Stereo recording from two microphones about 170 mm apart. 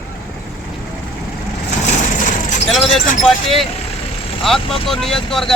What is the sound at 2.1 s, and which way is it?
Vehicle, 50° left (ahead or behind).